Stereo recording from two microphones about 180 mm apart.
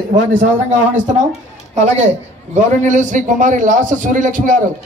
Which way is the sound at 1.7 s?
40° right (ahead or behind).